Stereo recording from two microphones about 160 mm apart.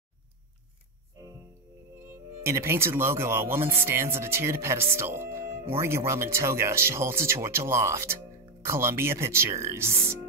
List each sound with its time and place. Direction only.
2.4 s speech: 15° right (ahead or behind)